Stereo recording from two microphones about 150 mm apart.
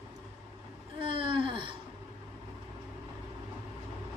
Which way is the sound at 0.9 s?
35° right (ahead or behind).